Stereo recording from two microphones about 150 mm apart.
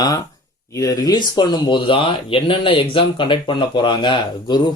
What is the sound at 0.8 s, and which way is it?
Speech, 25° left (ahead or behind).